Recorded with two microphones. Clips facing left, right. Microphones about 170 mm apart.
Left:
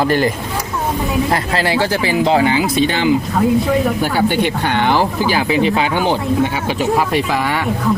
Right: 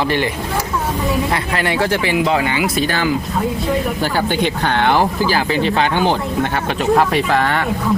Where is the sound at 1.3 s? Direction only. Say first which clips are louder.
Left 2 dB; 30° left (ahead or behind).